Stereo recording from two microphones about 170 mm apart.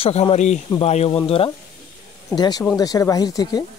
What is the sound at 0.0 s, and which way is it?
Speech, 35° left (ahead or behind).